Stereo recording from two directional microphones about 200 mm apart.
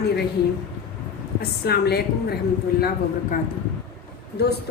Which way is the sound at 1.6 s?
50° left (ahead or behind).